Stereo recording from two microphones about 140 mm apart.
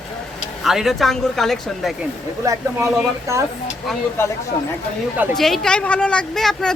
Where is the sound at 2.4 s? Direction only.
25° right (ahead or behind).